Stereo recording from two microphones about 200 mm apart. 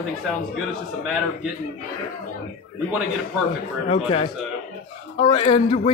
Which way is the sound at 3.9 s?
30° left (ahead or behind).